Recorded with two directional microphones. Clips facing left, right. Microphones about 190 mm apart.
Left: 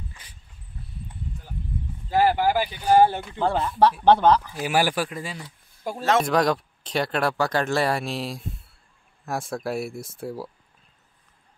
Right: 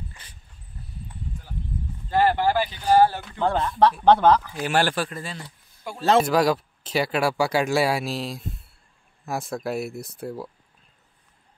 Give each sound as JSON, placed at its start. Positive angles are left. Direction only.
{"t": 2.0, "sound": "speech", "side_deg": 10}
{"t": 5.9, "sound": "speech", "side_deg": 40}
{"t": 6.2, "sound": "speech", "side_deg": -5}